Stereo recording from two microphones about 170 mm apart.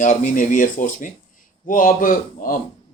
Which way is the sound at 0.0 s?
45° left (ahead or behind).